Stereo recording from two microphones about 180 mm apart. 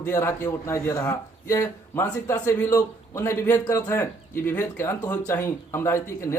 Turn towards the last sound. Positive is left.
turn(degrees=15)  # may be behind; listen again after turning